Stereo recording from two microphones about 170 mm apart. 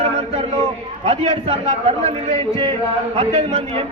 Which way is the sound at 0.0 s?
35° right (ahead or behind).